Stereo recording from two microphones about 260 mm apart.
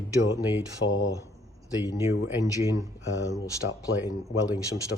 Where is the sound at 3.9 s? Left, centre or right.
Left.